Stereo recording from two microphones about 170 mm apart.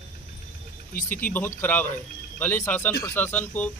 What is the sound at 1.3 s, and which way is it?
A man's voice, 10° left (ahead or behind).